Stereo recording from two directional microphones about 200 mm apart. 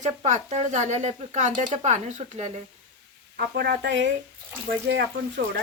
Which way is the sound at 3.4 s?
50° right (ahead or behind).